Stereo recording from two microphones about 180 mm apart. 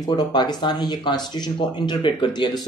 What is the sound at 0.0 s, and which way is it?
Speech, 25° left (ahead or behind).